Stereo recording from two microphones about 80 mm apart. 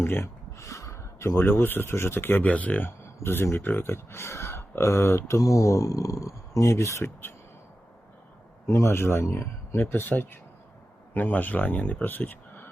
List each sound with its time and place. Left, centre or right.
0.0 s a sound: left
1.4 s speech: left
2.5 s speech: centre
5.4 s speech: left
8.6 s speech: left
9.8 s speech: left